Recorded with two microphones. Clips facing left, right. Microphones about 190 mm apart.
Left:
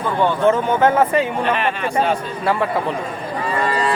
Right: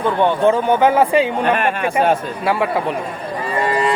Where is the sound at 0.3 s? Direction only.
15° right (ahead or behind).